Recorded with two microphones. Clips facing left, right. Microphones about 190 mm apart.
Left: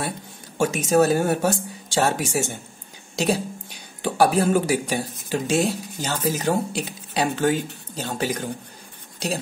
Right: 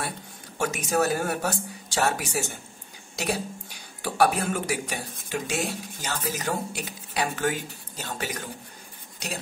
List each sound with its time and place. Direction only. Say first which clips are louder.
0.6 s speech: left 7 dB; 25° left (ahead or behind)